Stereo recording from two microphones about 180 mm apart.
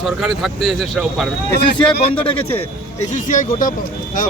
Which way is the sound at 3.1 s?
45° left (ahead or behind).